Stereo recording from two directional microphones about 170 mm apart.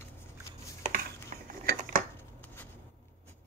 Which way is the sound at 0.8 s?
60° right (ahead or behind).